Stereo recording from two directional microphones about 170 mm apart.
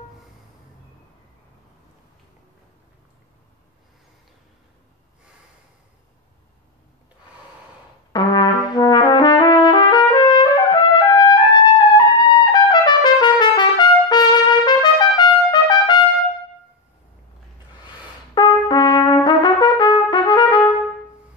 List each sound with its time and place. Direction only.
8.1 s brass instrument: 25° left (ahead or behind)
12.3 s trumpet: 25° left (ahead or behind)
18.3 s trumpet: 25° left (ahead or behind)